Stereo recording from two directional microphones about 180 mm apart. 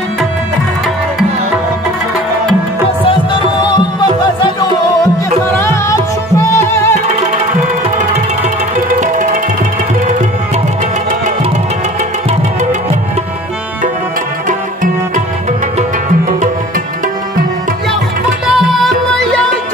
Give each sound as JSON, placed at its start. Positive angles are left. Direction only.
{"t": 3.1, "sound": "music", "side_deg": 25}
{"t": 5.5, "sound": "music", "side_deg": 15}
{"t": 9.0, "sound": "music", "side_deg": -45}